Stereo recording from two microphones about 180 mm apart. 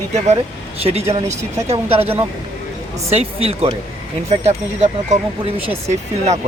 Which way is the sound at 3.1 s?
35° right (ahead or behind).